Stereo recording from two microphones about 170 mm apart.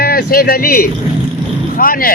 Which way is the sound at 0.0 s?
60° left (ahead or behind).